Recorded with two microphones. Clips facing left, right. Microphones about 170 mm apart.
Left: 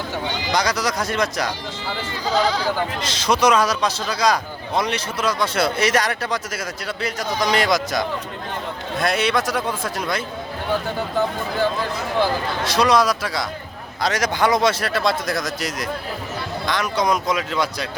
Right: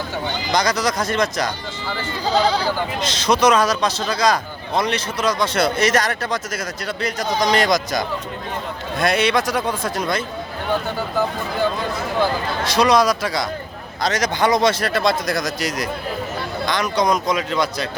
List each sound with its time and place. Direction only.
0.5 s a man's voice: 10° left (ahead or behind)
2.2 s speech: 30° right (ahead or behind)
3.0 s a man's voice: 10° left (ahead or behind)
12.6 s speech: centre (ahead or behind)